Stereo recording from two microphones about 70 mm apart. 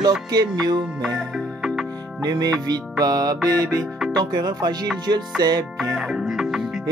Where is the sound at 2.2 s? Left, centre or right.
Right.